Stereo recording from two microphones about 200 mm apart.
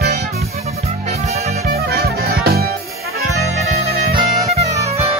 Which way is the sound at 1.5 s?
50° right (ahead or behind).